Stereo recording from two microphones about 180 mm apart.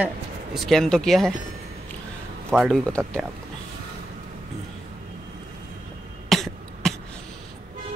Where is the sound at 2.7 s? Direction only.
5° left (ahead or behind).